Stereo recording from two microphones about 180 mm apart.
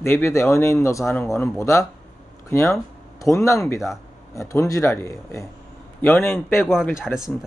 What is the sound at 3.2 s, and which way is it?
Speech, 15° left (ahead or behind).